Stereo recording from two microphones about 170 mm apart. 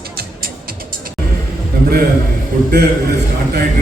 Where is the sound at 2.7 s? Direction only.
65° right (ahead or behind).